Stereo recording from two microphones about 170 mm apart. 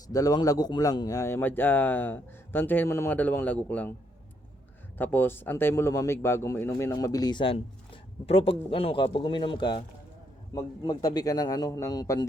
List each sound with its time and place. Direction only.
0.1 s speech: 20° left (ahead or behind)
4.9 s speech: 10° left (ahead or behind)